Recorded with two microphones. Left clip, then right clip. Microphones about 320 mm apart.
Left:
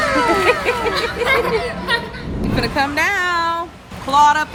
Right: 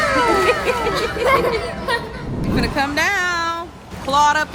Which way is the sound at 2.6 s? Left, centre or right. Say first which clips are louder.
Left 1 dB; centre.